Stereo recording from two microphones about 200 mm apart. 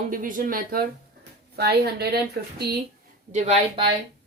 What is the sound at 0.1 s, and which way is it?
A woman's voice, 45° right (ahead or behind).